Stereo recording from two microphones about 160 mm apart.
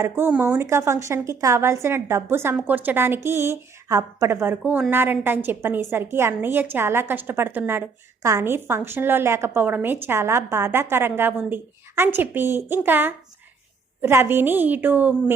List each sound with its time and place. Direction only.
0.0 s a woman's voice: 10° right (ahead or behind)